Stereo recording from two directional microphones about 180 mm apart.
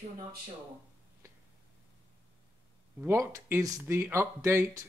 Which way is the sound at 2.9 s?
15° right (ahead or behind).